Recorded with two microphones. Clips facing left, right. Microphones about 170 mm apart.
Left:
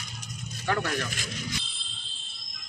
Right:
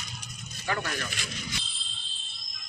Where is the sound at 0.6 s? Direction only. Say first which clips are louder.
Left 3 dB; 55° left (ahead or behind).